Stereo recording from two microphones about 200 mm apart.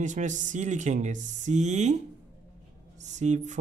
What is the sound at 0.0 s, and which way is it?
Speech, 40° right (ahead or behind).